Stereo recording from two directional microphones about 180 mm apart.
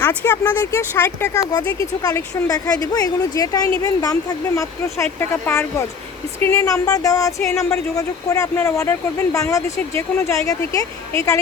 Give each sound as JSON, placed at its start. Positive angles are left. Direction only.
{"t": 0.0, "sound": "speech", "side_deg": 10}